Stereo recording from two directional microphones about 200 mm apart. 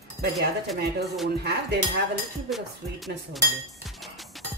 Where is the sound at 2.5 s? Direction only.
Centre (ahead or behind).